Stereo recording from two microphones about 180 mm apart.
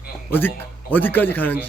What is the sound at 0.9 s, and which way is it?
Speech, 10° left (ahead or behind).